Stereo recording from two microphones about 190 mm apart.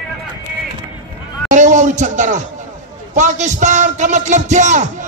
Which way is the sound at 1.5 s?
40° right (ahead or behind).